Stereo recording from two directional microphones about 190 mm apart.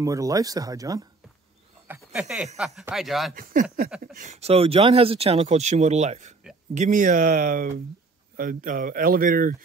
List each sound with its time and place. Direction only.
0.0 s speech: 20° right (ahead or behind)
2.1 s speech: 5° right (ahead or behind)
4.0 s speech: 40° right (ahead or behind)